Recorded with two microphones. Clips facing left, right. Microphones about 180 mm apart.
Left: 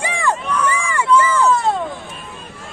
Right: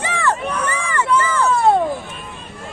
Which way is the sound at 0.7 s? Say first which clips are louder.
Left 3 dB; 10° left (ahead or behind).